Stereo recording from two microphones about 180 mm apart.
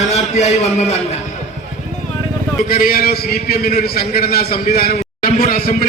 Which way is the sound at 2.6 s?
55° left (ahead or behind).